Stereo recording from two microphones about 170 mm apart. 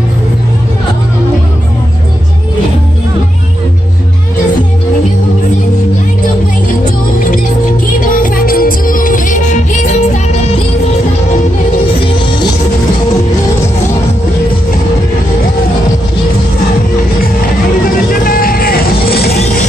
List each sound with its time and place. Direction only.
8.0 s music: 55° left (ahead or behind)
18.2 s music: 60° left (ahead or behind)